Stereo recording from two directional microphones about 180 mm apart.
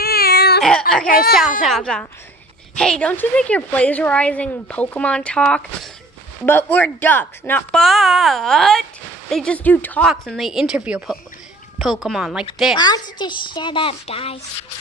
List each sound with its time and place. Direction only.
0.0 s baby cry: 60° left (ahead or behind)
0.6 s baby cry: 5° left (ahead or behind)
1.6 s a woman's voice: centre (ahead or behind)
12.7 s a child's voice: 25° left (ahead or behind)